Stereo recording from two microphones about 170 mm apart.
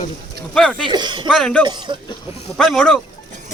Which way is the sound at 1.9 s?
30° right (ahead or behind).